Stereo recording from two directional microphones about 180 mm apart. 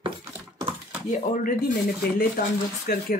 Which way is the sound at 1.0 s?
45° left (ahead or behind).